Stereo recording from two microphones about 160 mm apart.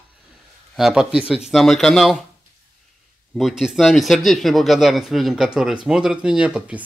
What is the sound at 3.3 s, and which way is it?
Speech, centre (ahead or behind).